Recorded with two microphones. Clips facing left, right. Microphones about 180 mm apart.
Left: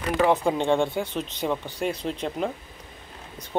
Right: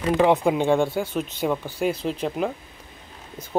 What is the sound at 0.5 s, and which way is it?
Speech, 5° right (ahead or behind).